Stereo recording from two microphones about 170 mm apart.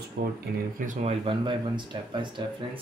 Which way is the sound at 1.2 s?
30° right (ahead or behind).